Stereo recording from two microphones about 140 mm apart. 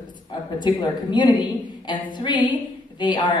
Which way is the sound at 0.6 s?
35° left (ahead or behind).